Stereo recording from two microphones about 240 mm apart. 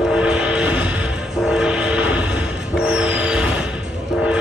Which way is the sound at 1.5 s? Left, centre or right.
Centre.